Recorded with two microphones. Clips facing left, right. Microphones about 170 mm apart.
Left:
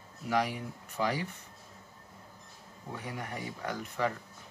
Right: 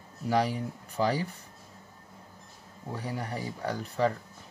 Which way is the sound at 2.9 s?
35° right (ahead or behind).